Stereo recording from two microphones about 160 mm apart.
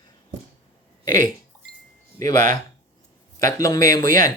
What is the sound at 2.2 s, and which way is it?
Speech, 55° right (ahead or behind).